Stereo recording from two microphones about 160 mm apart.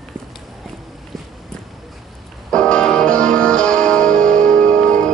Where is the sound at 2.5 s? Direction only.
5° left (ahead or behind).